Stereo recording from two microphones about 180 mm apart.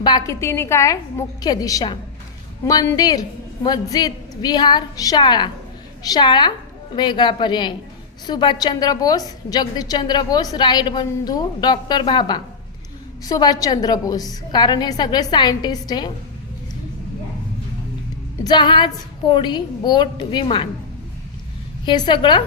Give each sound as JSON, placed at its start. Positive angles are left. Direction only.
{"t": 0.0, "sound": "a woman's voice", "side_deg": 25}
{"t": 18.4, "sound": "a woman's voice", "side_deg": 25}
{"t": 21.8, "sound": "a woman's voice", "side_deg": 25}